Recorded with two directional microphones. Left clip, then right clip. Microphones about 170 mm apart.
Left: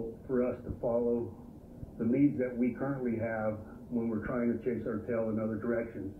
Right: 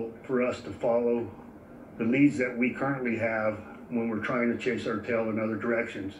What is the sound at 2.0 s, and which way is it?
Speech, 20° right (ahead or behind).